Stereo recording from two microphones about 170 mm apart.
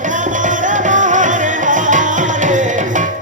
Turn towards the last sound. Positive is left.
turn(degrees=-45)  # may be behind; listen again after turning